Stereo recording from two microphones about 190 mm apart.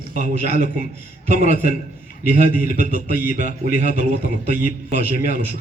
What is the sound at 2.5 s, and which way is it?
A man's voice, 45° left (ahead or behind).